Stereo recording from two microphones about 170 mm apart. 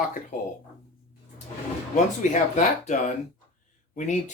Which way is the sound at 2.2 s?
45° left (ahead or behind).